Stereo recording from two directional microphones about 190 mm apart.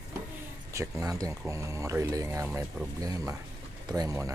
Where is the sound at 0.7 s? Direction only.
15° right (ahead or behind).